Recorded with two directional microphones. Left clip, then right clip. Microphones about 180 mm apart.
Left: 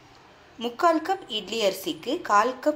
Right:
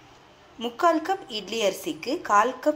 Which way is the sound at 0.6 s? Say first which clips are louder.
Even; centre (ahead or behind).